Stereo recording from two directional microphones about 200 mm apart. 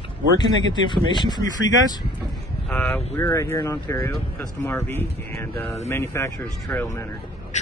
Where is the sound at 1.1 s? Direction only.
20° left (ahead or behind).